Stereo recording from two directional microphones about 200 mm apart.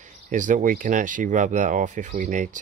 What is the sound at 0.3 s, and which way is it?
Speech, 40° right (ahead or behind).